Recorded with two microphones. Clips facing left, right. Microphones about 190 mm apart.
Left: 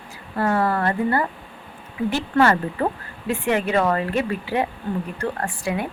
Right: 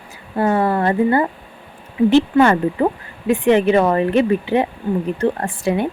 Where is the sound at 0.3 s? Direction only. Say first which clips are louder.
Right 4 dB; 20° right (ahead or behind).